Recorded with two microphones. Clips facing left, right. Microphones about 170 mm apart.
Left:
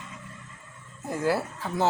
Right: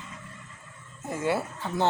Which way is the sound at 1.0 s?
Centre (ahead or behind).